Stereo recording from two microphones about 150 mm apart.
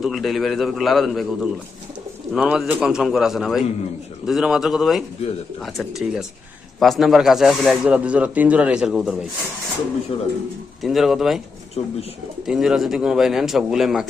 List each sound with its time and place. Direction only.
0.0 s speech: centre (ahead or behind)
10.1 s speech: 40° left (ahead or behind)
10.8 s speech: centre (ahead or behind)
11.8 s speech: 40° left (ahead or behind)
12.5 s speech: 5° right (ahead or behind)